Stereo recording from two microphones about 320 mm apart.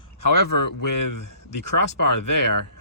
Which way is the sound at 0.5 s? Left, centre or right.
Left.